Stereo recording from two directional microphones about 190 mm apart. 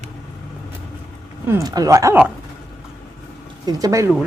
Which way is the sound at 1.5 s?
15° right (ahead or behind).